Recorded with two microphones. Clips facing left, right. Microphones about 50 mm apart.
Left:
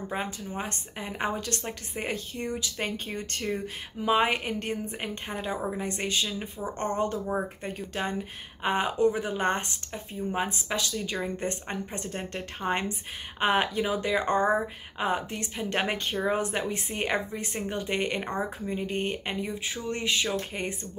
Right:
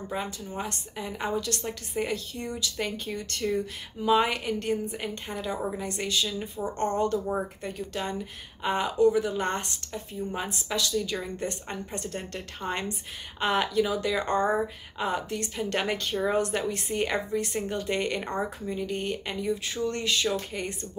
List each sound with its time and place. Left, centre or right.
0.1 s a woman's voice: left
10.7 s a woman's voice: left